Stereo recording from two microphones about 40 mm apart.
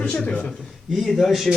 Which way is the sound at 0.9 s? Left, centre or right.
Centre.